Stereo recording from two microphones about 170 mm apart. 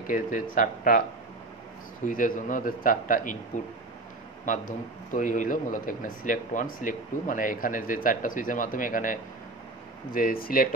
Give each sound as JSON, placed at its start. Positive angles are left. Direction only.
{"t": 0.0, "sound": "a man's voice", "side_deg": 50}
{"t": 2.0, "sound": "a man's voice", "side_deg": 50}
{"t": 4.5, "sound": "a man's voice", "side_deg": 50}